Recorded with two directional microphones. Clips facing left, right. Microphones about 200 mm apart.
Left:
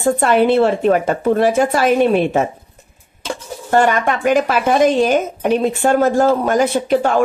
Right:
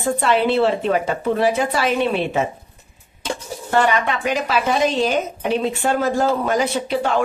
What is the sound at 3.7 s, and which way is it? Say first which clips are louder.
A woman's voice: left 4 dB; 45° left (ahead or behind).